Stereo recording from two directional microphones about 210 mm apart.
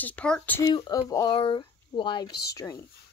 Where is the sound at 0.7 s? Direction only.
20° left (ahead or behind).